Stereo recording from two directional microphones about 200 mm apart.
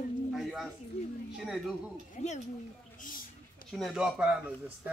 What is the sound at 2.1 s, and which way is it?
Speech, 35° left (ahead or behind).